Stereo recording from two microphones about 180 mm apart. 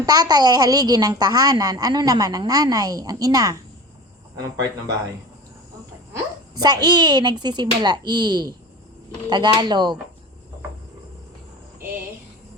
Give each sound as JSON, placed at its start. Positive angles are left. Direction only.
{"t": 0.0, "sound": "a child's voice", "side_deg": -20}
{"t": 6.6, "sound": "a child's voice", "side_deg": -20}